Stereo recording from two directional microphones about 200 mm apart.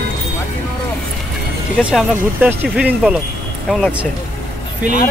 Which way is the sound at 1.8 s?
5° right (ahead or behind).